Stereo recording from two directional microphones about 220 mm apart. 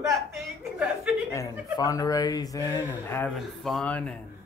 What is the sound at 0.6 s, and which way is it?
Speech, 5° right (ahead or behind).